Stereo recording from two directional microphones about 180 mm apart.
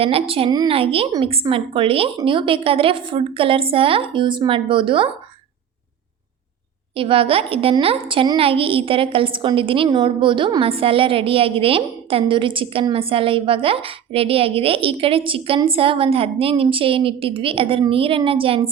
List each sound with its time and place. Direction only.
0.0 s a woman's voice: 30° right (ahead or behind)
6.9 s a woman's voice: 30° right (ahead or behind)